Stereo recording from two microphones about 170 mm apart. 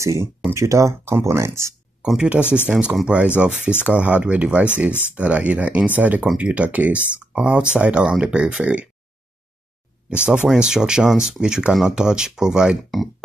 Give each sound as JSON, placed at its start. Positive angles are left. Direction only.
{"t": 0.0, "sound": "speech", "side_deg": -15}
{"t": 10.0, "sound": "speech", "side_deg": -5}